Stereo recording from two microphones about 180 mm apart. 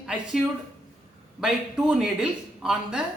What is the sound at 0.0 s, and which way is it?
Speech, 5° right (ahead or behind).